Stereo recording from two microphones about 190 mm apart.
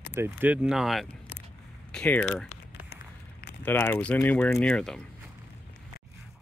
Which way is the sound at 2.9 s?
55° left (ahead or behind).